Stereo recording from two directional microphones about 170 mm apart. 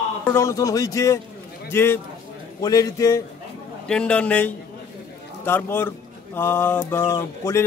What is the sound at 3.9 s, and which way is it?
Speech, 5° left (ahead or behind).